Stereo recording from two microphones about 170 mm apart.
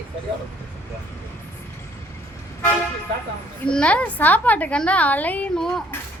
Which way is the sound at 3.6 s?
5° left (ahead or behind).